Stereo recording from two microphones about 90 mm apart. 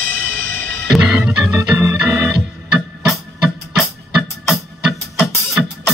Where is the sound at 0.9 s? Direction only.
10° right (ahead or behind).